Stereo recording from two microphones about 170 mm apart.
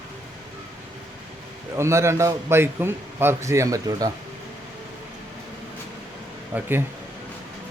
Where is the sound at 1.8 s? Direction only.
15° right (ahead or behind).